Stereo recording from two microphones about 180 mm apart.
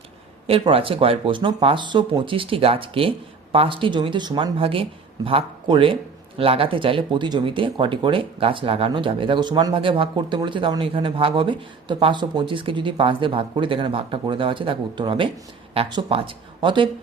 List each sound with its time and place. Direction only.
0.4 s speech: 30° right (ahead or behind)